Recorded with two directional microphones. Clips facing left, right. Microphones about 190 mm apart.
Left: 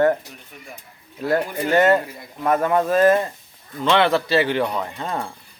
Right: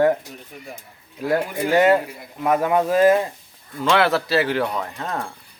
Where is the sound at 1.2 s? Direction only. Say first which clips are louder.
Even; 10° right (ahead or behind).